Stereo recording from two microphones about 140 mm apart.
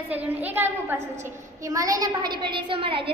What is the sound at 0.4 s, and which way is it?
A woman's voice, 15° right (ahead or behind).